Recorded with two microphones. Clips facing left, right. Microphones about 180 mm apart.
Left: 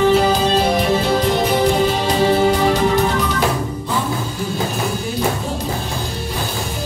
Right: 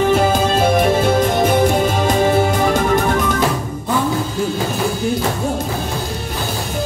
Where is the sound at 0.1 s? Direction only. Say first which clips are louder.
Even; 50° right (ahead or behind).